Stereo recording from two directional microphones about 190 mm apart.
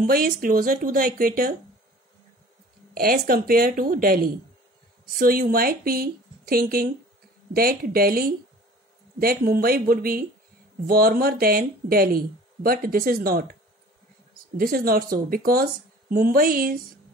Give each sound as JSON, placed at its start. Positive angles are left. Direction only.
{"t": 0.0, "sound": "speech", "side_deg": -50}
{"t": 2.9, "sound": "speech", "side_deg": -50}
{"t": 14.6, "sound": "speech", "side_deg": -50}